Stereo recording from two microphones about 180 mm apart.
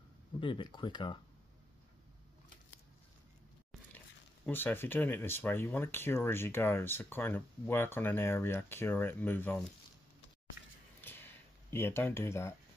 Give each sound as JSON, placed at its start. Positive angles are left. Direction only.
{"t": 0.4, "sound": "speech", "side_deg": 25}
{"t": 4.5, "sound": "speech", "side_deg": 10}
{"t": 11.0, "sound": "a sound", "side_deg": 10}